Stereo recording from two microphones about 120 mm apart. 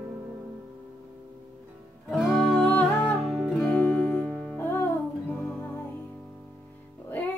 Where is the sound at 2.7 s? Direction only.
15° left (ahead or behind).